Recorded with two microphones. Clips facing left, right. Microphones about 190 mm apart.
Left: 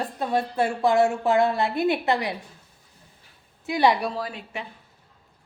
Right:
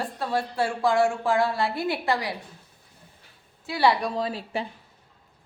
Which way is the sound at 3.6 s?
20° left (ahead or behind).